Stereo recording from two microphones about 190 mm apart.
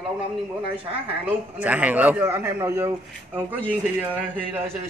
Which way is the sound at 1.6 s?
10° right (ahead or behind).